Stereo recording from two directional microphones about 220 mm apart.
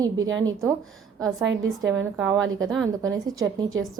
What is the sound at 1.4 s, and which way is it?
Speech, 55° right (ahead or behind).